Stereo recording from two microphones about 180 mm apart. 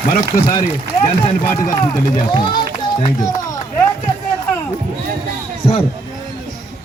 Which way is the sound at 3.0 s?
20° left (ahead or behind).